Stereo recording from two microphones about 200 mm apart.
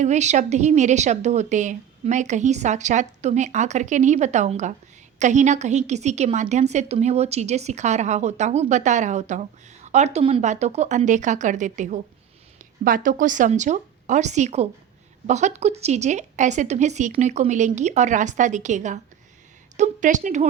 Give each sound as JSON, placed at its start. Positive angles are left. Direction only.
{"t": 0.0, "sound": "a woman's voice", "side_deg": -35}